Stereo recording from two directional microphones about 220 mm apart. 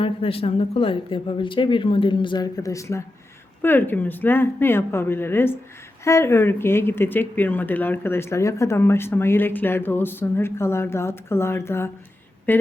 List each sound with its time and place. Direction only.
0.0 s speech: 25° left (ahead or behind); by 12.6 s 10° left (ahead or behind)